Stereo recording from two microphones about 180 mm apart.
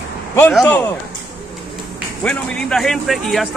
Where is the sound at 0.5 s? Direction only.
10° left (ahead or behind).